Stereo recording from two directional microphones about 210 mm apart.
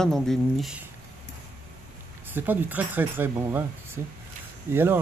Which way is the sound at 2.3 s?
10° right (ahead or behind).